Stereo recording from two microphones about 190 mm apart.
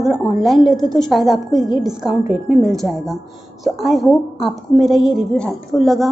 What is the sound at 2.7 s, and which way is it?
A woman's voice, centre (ahead or behind).